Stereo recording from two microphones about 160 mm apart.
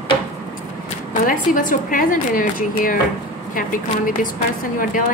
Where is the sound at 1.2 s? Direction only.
60° left (ahead or behind).